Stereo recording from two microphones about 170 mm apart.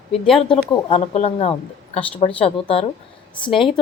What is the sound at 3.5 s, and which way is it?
Speech, centre (ahead or behind).